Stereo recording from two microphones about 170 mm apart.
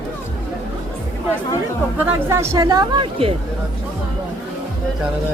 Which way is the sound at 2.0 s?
15° right (ahead or behind).